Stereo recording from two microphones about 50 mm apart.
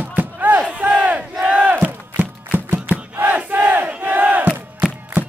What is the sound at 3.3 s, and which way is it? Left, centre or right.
Crowd, right.